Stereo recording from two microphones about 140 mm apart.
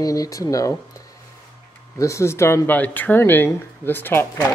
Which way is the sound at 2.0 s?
20° left (ahead or behind).